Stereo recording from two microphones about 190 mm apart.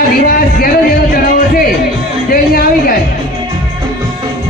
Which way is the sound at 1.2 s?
50° left (ahead or behind).